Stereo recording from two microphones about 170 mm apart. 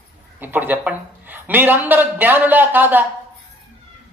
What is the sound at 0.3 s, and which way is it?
Speech, 10° right (ahead or behind).